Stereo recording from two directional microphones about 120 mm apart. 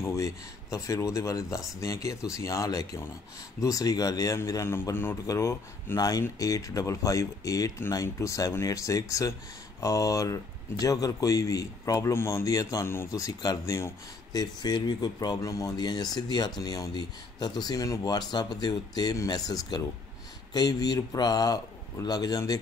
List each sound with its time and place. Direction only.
0.0 s a man's voice: 25° left (ahead or behind)